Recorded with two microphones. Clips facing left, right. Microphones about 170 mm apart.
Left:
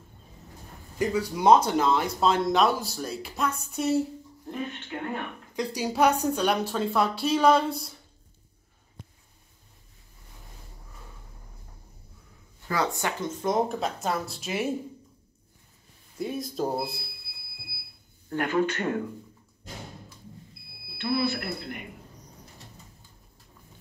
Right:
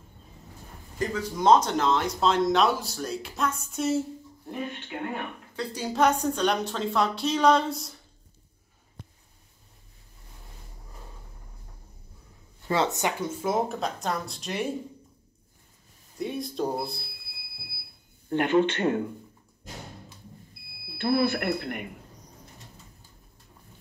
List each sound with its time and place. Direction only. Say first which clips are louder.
0.9 s a woman's voice: left 3 dB; 10° left (ahead or behind); by 5.1 s 10° right (ahead or behind)
5.5 s a woman's voice: left 3 dB; 15° left (ahead or behind)
12.6 s speech: right 2 dB; 25° right (ahead or behind)
13.2 s a woman's voice: left 3 dB; 5° right (ahead or behind)
16.2 s a woman's voice: even; centre (ahead or behind)
18.3 s speech: right 3 dB; 25° right (ahead or behind)
21.0 s speech: right 3 dB; 50° right (ahead or behind)